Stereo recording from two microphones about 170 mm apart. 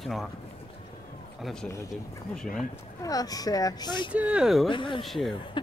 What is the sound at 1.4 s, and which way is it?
Speech, 5° left (ahead or behind).